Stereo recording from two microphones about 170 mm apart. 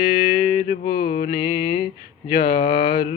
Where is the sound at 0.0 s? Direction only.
65° left (ahead or behind).